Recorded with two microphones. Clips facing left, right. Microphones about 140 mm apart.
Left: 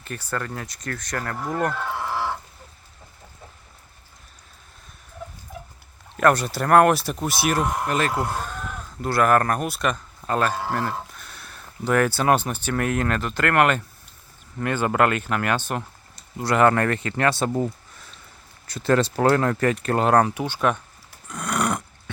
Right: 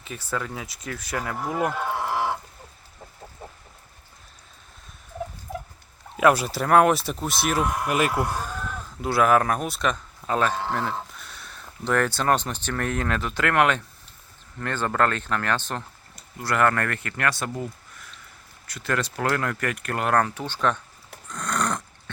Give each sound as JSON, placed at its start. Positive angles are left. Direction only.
{"t": 0.0, "sound": "speech", "side_deg": 0}
{"t": 6.1, "sound": "speech", "side_deg": -5}
{"t": 7.9, "sound": "speech", "side_deg": -10}
{"t": 9.0, "sound": "speech", "side_deg": 0}
{"t": 16.1, "sound": "speech", "side_deg": 20}
{"t": 21.2, "sound": "dog", "side_deg": 10}